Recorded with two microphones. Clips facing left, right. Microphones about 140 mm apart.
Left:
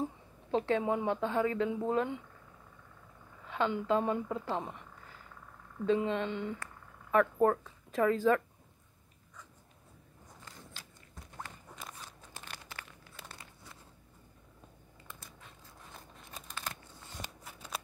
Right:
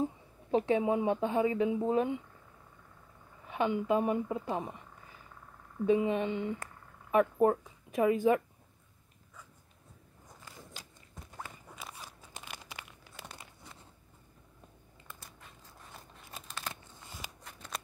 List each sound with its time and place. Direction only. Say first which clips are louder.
0.5 s speech: right 2 dB; 15° right (ahead or behind)
3.4 s speech: right 1 dB; 15° right (ahead or behind)
10.4 s biting: right 2 dB; 15° right (ahead or behind)
11.4 s a sound: right 1 dB; 5° right (ahead or behind)
12.4 s crumpling: right 1 dB; 15° right (ahead or behind)
17.4 s scissors: left 1 dB; 5° left (ahead or behind)